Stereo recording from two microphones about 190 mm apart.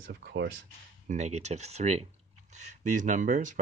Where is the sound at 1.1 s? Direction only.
35° right (ahead or behind).